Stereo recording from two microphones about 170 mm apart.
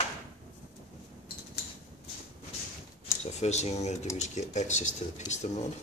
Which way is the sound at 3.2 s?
40° left (ahead or behind).